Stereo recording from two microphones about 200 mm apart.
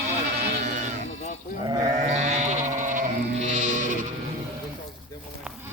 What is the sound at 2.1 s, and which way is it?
Sheep, 35° right (ahead or behind).